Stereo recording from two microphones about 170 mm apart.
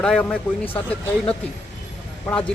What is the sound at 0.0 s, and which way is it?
Speech, 5° left (ahead or behind).